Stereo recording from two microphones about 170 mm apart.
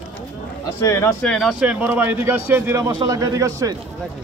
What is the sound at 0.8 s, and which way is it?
Speech, 15° left (ahead or behind).